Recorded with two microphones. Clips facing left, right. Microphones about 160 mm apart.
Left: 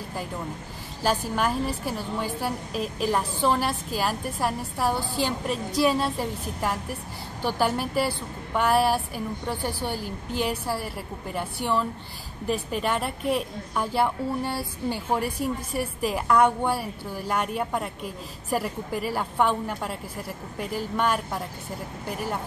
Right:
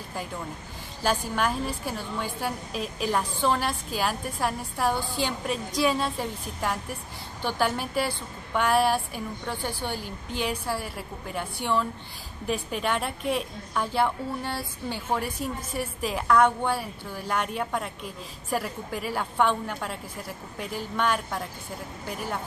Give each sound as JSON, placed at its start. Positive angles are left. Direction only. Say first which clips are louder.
{"t": 1.0, "sound": "a woman's voice", "louder": "left 1 dB", "side_deg": 5}